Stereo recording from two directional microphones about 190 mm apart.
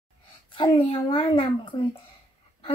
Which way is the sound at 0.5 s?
25° left (ahead or behind).